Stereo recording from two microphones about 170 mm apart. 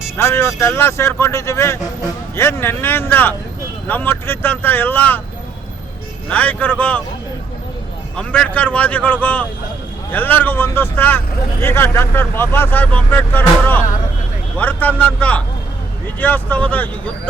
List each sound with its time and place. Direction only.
0.2 s speech: 15° left (ahead or behind)
6.3 s speech: 10° left (ahead or behind)
8.1 s speech: 5° left (ahead or behind)